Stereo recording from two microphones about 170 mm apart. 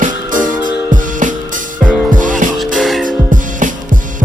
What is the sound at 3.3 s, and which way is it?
Music, 50° right (ahead or behind).